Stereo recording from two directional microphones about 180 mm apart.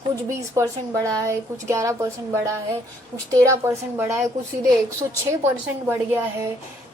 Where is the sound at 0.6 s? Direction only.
20° right (ahead or behind).